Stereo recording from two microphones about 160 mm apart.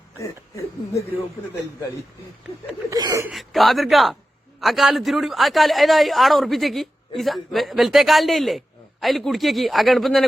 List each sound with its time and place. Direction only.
0.2 s speech: 20° left (ahead or behind)
2.9 s speech: 20° right (ahead or behind)
3.2 s speech: centre (ahead or behind)